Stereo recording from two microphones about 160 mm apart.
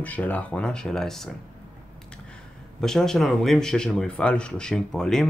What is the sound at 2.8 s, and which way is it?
Speech, 5° left (ahead or behind).